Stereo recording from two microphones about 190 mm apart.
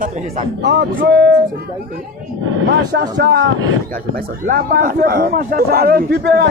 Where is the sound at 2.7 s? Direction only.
60° right (ahead or behind).